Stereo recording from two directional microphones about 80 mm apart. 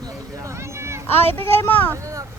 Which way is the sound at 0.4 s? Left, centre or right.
Right.